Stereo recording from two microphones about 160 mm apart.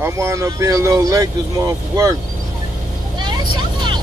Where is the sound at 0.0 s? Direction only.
20° right (ahead or behind).